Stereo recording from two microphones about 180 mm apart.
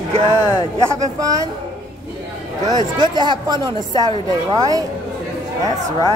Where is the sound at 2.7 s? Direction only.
25° right (ahead or behind).